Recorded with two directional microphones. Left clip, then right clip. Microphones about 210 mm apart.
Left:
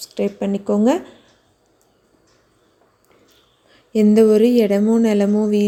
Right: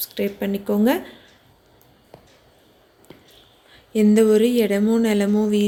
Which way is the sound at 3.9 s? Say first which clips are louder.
Left 3 dB; 20° left (ahead or behind).